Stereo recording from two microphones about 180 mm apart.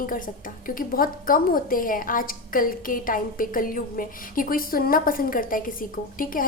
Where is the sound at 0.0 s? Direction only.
50° left (ahead or behind).